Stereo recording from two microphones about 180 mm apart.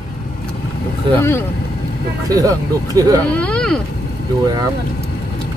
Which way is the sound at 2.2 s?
20° right (ahead or behind).